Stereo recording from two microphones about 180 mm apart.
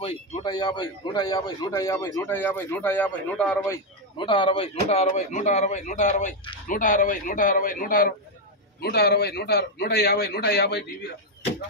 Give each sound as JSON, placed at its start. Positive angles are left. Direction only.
{"t": 0.0, "sound": "a man's voice", "side_deg": 30}
{"t": 3.7, "sound": "a man's voice", "side_deg": 25}
{"t": 8.8, "sound": "a man's voice", "side_deg": 65}